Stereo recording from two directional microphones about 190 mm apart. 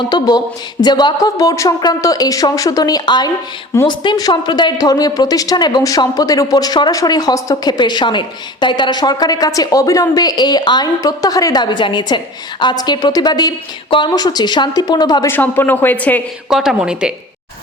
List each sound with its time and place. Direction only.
0.0 s speech: 20° left (ahead or behind)
16.5 s a woman's voice: 5° right (ahead or behind)